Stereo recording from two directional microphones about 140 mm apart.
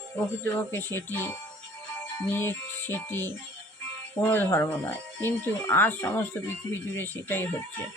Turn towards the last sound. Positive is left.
turn(degrees=15)  # may be behind; listen again after turning